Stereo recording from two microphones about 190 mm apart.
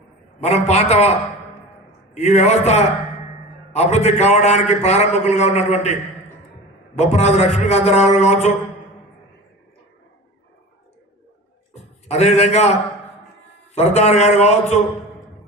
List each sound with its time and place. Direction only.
0.3 s a man's voice: 35° left (ahead or behind)
2.1 s a man's voice: 35° left (ahead or behind)
7.0 s a man's voice: 35° left (ahead or behind)
11.7 s a man's voice: 35° left (ahead or behind)
13.7 s a man's voice: 35° left (ahead or behind)